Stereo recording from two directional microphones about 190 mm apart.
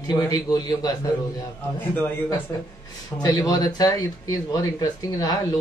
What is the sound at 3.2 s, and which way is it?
Speech, 20° left (ahead or behind).